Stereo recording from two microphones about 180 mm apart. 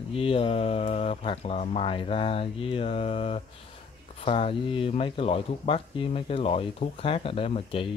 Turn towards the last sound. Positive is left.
turn(degrees=30)  # may be behind; listen again after turning